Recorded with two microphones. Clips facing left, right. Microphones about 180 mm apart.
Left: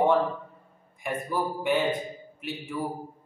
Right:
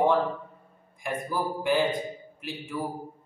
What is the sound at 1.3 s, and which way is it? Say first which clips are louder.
A man's voice: right 1 dB; centre (ahead or behind).